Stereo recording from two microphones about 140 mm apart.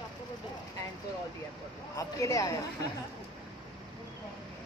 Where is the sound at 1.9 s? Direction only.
20° left (ahead or behind).